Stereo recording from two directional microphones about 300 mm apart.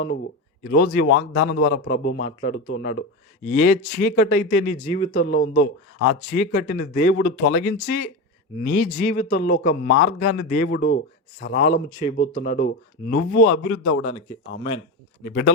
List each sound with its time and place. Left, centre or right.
0.6 s a man's voice: left
4.9 s speech: centre
5.1 s a man's voice: left
11.9 s speech: centre
12.3 s a man's voice: left
14.0 s speech: centre
15.2 s a man's voice: left